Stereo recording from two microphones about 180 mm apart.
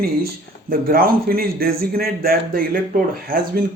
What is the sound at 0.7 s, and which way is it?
Speech, 55° right (ahead or behind).